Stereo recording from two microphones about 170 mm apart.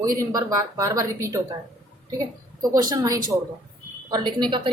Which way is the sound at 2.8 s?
20° right (ahead or behind).